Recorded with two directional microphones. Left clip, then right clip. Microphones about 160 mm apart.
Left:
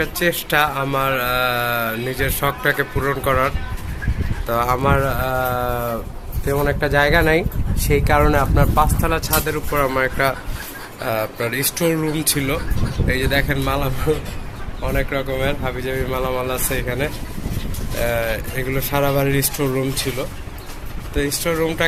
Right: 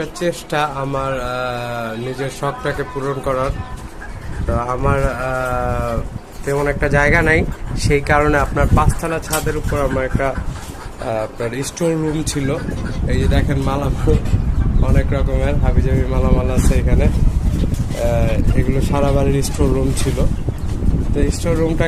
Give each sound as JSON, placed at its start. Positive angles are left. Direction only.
{"t": 0.0, "sound": "speech", "side_deg": 0}
{"t": 4.5, "sound": "speech", "side_deg": 20}
{"t": 11.0, "sound": "speech", "side_deg": -5}
{"t": 21.2, "sound": "speech", "side_deg": -5}